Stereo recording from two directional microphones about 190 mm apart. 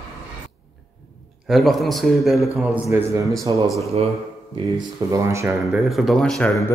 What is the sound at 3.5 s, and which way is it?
Speech, 25° right (ahead or behind).